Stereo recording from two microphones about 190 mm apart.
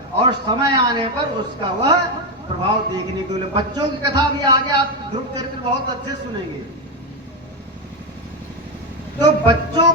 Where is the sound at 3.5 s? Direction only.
25° right (ahead or behind).